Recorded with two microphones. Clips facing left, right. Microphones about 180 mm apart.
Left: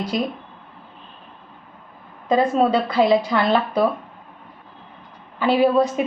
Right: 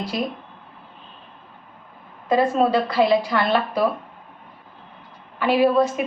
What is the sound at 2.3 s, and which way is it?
A woman's voice, 20° left (ahead or behind).